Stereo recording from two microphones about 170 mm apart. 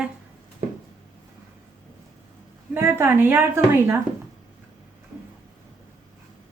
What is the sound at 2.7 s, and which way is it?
A woman's voice, 15° right (ahead or behind).